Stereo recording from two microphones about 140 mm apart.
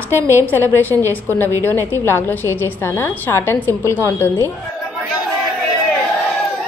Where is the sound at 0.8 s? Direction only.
15° left (ahead or behind).